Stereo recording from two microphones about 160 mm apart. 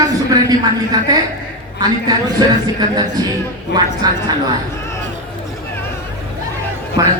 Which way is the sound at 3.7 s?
90° left.